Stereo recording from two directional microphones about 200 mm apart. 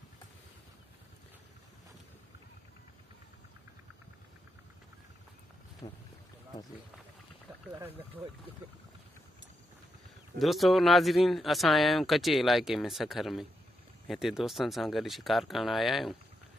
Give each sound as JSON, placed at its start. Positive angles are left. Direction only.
{"t": 5.8, "sound": "speech", "side_deg": 35}
{"t": 10.4, "sound": "speech", "side_deg": 0}